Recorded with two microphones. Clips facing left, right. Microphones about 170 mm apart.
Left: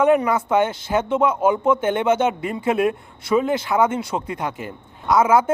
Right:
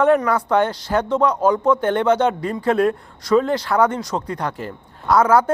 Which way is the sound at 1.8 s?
20° left (ahead or behind).